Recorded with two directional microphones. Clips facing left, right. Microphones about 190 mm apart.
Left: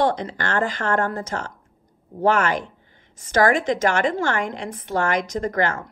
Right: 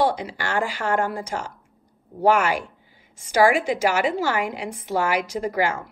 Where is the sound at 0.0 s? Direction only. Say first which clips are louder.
Left 1 dB; 10° right (ahead or behind).